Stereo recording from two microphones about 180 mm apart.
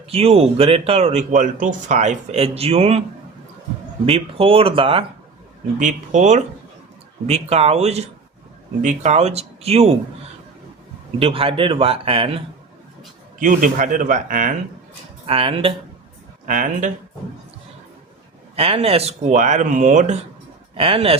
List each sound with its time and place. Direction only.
0.1 s speech: 35° right (ahead or behind)
4.0 s speech: 30° right (ahead or behind)
5.8 s speech: 40° right (ahead or behind)
11.2 s speech: 30° right (ahead or behind)
13.4 s speech: 50° right (ahead or behind)
15.3 s speech: 30° right (ahead or behind)
16.5 s speech: 45° right (ahead or behind)
18.5 s speech: 35° right (ahead or behind)
20.7 s speech: 30° right (ahead or behind)